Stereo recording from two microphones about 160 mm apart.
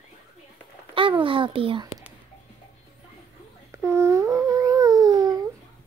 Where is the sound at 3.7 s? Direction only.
15° right (ahead or behind).